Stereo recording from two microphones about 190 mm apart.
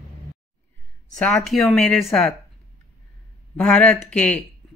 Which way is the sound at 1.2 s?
Centre (ahead or behind).